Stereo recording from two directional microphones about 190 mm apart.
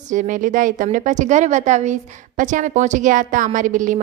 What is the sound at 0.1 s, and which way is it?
A woman's voice, 40° right (ahead or behind).